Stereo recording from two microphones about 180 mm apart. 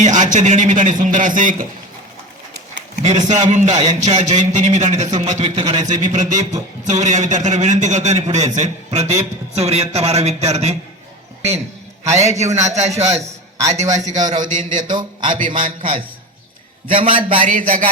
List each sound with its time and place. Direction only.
0.0 s speech: 40° right (ahead or behind)
2.7 s a man's voice: 40° right (ahead or behind)
12.1 s a man's voice: 40° right (ahead or behind)
13.6 s a man's voice: 15° right (ahead or behind)
14.4 s speech: 45° right (ahead or behind)
14.9 s a man's voice: 25° right (ahead or behind)
17.4 s speech: 50° right (ahead or behind)